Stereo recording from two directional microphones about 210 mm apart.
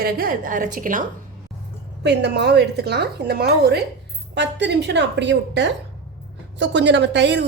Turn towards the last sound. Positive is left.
turn(degrees=-55)  # may be behind; listen again after turning